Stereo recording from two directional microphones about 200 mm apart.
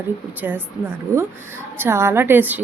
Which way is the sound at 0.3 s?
10° right (ahead or behind).